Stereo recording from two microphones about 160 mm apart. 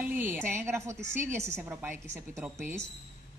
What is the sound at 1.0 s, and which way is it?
Speech, 50° right (ahead or behind).